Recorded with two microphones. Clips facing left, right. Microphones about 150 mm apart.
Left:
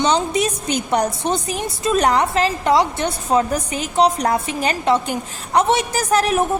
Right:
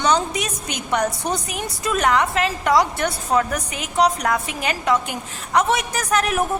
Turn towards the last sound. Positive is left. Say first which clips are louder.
# left 4 dB
turn(degrees=30)  # may be behind; listen again after turning